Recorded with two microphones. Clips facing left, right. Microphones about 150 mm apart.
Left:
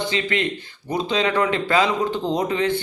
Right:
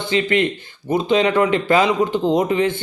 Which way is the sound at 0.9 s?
25° right (ahead or behind).